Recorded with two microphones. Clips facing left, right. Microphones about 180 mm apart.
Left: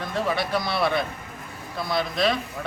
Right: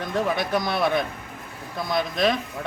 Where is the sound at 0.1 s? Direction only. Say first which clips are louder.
Right 2 dB; 20° right (ahead or behind).